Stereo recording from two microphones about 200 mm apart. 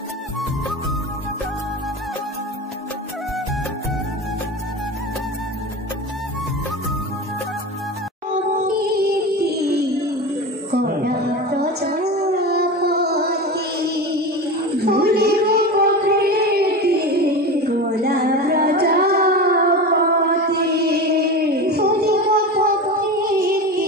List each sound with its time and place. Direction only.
8.6 s music: 50° right (ahead or behind)
10.7 s a sound: 50° right (ahead or behind)
23.2 s music: 45° right (ahead or behind)